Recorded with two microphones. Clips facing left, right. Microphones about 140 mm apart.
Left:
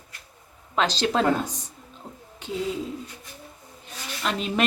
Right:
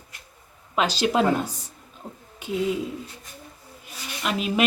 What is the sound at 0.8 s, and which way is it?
Speech, 10° right (ahead or behind).